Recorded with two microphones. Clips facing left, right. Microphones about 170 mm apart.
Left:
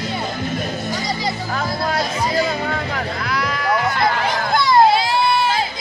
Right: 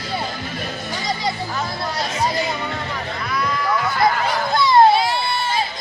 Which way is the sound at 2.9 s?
80° left.